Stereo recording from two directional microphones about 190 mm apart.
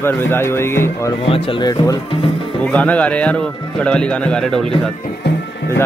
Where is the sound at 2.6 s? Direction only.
5° left (ahead or behind).